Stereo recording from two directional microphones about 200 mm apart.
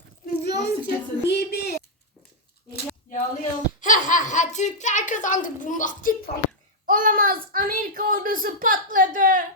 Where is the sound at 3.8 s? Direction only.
40° left (ahead or behind).